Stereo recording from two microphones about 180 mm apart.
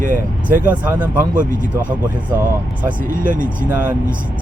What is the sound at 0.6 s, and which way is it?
Speech, 10° right (ahead or behind).